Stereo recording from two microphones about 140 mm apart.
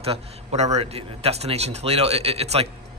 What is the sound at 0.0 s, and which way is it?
A man's voice, 45° right (ahead or behind).